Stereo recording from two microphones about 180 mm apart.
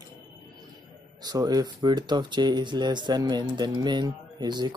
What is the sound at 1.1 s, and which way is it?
Speech, 20° right (ahead or behind).